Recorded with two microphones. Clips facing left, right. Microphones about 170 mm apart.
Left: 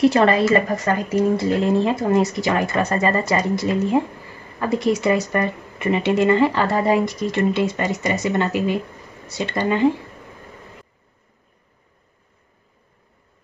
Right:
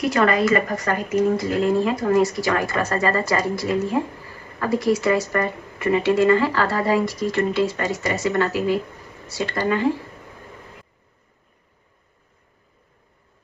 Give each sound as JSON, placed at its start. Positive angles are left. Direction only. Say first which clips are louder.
{"t": 0.0, "sound": "speech", "louder": "left 3 dB", "side_deg": 30}